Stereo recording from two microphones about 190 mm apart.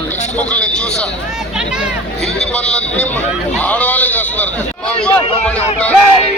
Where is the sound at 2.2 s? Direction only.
5° left (ahead or behind).